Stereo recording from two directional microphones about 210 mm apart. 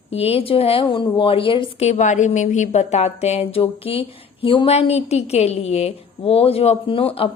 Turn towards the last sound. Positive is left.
turn(degrees=25)  # may be behind; listen again after turning